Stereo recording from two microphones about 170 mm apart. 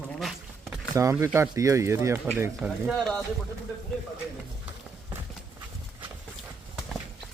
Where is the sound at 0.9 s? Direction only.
20° right (ahead or behind).